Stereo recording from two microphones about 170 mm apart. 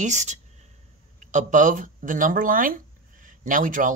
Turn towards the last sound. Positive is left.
turn(degrees=-50)  # may be behind; listen again after turning